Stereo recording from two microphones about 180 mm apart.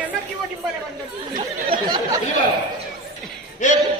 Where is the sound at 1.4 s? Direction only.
25° right (ahead or behind).